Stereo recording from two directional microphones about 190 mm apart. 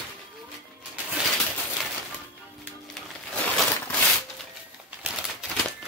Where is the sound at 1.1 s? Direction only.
Centre (ahead or behind).